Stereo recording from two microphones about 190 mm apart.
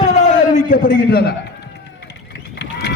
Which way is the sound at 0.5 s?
50° left (ahead or behind).